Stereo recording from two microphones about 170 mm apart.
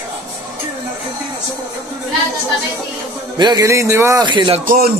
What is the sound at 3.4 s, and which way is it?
Speech, 20° right (ahead or behind).